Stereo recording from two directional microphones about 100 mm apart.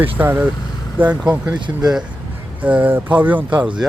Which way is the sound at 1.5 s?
50° right (ahead or behind).